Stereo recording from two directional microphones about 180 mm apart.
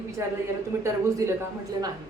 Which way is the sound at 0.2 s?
15° right (ahead or behind).